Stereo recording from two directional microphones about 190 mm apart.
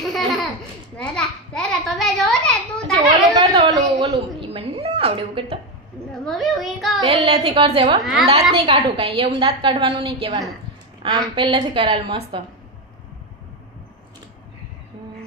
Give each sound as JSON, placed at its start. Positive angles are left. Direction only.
{"t": 0.0, "sound": "a sound", "side_deg": 0}
{"t": 3.5, "sound": "a sound", "side_deg": -25}
{"t": 4.1, "sound": "cat", "side_deg": -30}
{"t": 6.1, "sound": "a child's voice", "side_deg": 0}
{"t": 7.1, "sound": "a woman's voice", "side_deg": -30}
{"t": 8.0, "sound": "a woman's voice", "side_deg": 0}
{"t": 8.3, "sound": "a woman's voice", "side_deg": -30}